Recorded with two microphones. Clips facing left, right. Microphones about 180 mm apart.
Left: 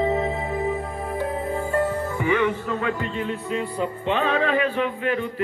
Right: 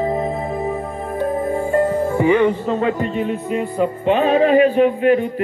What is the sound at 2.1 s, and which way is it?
Music, 20° right (ahead or behind).